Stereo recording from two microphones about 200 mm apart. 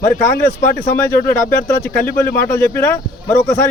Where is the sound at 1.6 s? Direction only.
10° left (ahead or behind).